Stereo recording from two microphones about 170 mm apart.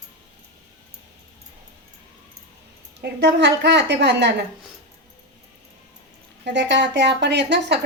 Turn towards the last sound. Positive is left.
turn(degrees=-90)